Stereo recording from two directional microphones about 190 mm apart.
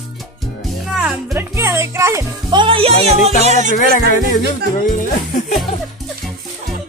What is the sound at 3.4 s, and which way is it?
Music, 35° right (ahead or behind).